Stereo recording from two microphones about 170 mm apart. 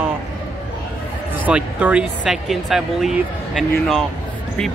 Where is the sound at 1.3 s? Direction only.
10° right (ahead or behind).